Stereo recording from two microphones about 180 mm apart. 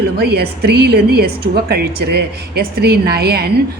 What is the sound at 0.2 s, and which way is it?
A woman's voice, 65° right (ahead or behind).